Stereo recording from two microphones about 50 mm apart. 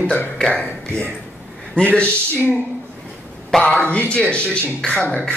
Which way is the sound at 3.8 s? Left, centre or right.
Left.